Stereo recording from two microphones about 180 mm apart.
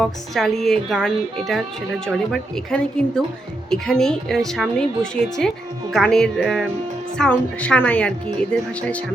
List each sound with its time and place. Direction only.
0.0 s speech: centre (ahead or behind)
5.2 s speech: 40° right (ahead or behind)
5.9 s speech: 5° left (ahead or behind)